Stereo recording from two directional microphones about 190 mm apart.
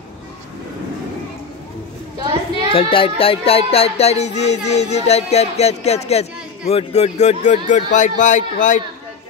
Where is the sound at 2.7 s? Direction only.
30° left (ahead or behind).